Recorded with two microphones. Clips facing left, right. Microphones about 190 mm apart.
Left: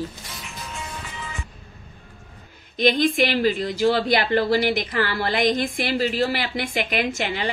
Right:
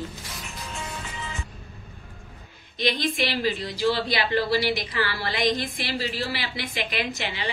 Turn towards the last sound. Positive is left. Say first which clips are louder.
# left 5 dB
turn(degrees=50)  # may be behind; listen again after turning